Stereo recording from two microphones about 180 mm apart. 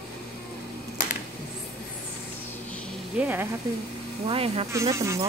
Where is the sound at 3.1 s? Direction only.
10° right (ahead or behind).